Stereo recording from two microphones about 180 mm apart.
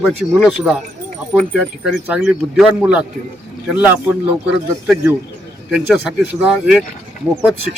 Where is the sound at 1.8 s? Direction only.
5° right (ahead or behind).